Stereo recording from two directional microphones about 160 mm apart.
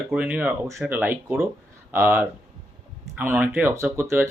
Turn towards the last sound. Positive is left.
turn(degrees=-15)  # may be behind; listen again after turning